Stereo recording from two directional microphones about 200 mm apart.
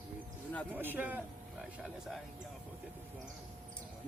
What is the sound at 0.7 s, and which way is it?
Speech, 10° right (ahead or behind).